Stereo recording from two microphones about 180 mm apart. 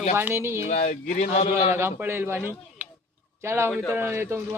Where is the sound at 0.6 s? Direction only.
40° left (ahead or behind).